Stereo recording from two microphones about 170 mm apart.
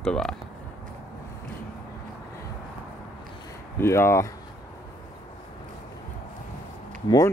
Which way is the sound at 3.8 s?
15° left (ahead or behind).